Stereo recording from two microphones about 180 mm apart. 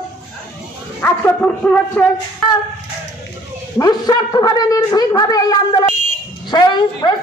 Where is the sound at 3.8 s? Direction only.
20° left (ahead or behind).